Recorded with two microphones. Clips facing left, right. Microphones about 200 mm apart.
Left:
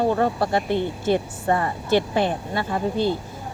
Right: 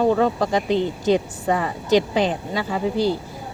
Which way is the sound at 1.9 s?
15° right (ahead or behind).